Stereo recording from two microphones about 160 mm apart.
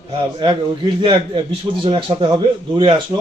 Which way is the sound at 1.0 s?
30° right (ahead or behind).